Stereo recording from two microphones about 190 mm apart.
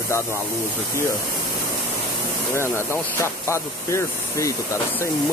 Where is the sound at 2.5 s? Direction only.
15° left (ahead or behind).